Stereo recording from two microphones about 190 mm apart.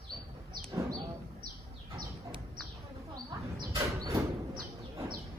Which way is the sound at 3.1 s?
20° right (ahead or behind).